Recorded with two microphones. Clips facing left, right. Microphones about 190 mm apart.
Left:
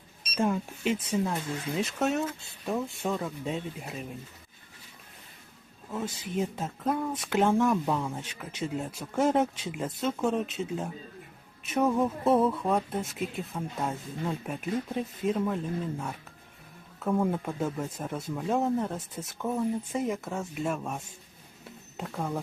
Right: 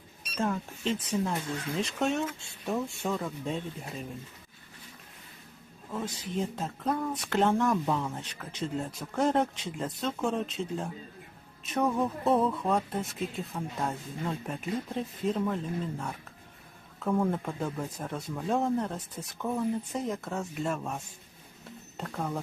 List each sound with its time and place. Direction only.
0.3 s speech: 15° left (ahead or behind)
5.9 s speech: 5° left (ahead or behind)